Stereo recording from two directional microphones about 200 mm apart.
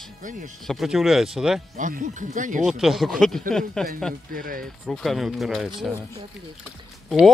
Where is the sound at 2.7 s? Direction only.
Centre (ahead or behind).